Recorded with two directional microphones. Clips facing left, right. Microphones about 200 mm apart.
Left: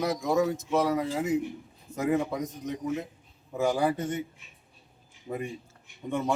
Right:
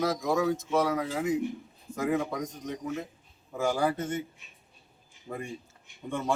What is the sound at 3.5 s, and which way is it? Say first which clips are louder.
Speech: left 2 dB; 20° left (ahead or behind).